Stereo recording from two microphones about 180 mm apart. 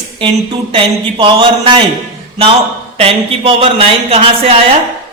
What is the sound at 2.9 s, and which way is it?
Speech, 30° right (ahead or behind).